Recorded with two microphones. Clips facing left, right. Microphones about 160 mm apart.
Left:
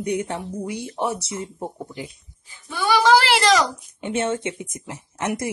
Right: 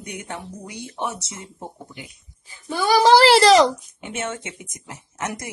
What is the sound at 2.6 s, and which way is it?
A child's voice, 40° right (ahead or behind).